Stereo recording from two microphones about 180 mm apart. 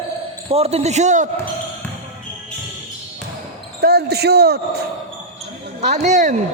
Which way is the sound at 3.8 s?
60° right (ahead or behind).